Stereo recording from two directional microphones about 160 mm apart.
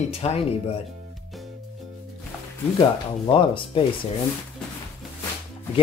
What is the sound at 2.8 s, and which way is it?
Speech, 30° left (ahead or behind).